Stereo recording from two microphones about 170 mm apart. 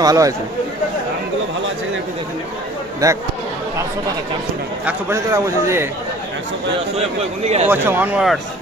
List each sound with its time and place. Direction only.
0.0 s speech: 20° right (ahead or behind)
3.0 s speech: 20° right (ahead or behind)
4.8 s a man's voice: 15° right (ahead or behind)
7.0 s speech: 40° right (ahead or behind)
7.6 s a man's voice: 10° right (ahead or behind)